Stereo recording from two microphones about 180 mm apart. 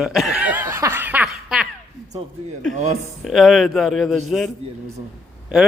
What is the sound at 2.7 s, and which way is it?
Speech, 40° right (ahead or behind).